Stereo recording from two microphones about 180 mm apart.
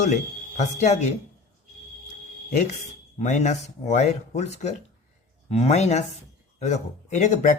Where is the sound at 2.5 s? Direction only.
40° left (ahead or behind).